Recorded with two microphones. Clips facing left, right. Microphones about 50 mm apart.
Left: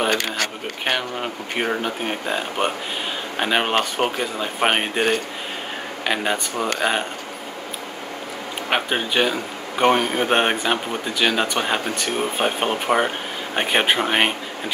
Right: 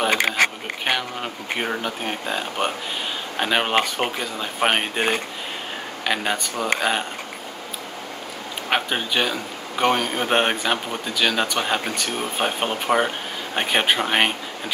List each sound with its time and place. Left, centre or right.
0.1 s a sound: centre
0.8 s a man's voice: centre
6.0 s a man's voice: centre
8.6 s a man's voice: centre